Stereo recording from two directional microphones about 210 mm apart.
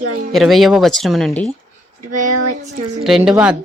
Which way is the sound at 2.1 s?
35° right (ahead or behind).